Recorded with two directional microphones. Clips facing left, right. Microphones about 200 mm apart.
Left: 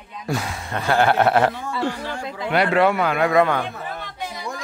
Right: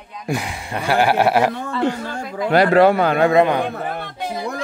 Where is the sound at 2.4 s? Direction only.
35° right (ahead or behind); by 3.6 s 20° right (ahead or behind).